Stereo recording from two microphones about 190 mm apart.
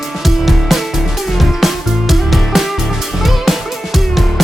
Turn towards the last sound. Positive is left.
turn(degrees=0)  # may be behind; listen again after turning